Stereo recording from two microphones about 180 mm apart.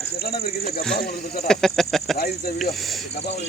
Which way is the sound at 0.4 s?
55° left (ahead or behind).